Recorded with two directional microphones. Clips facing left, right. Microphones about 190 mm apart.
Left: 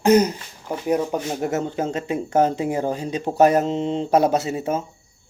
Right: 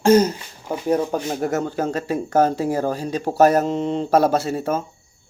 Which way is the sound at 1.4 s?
20° left (ahead or behind).